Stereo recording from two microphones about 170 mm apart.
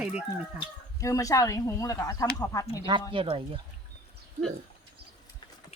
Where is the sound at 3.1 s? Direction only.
30° right (ahead or behind).